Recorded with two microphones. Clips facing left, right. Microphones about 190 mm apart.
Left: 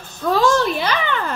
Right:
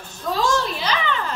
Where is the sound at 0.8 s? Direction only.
55° left (ahead or behind).